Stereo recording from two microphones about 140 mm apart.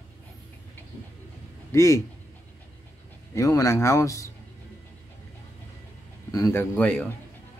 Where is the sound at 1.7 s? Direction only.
20° left (ahead or behind).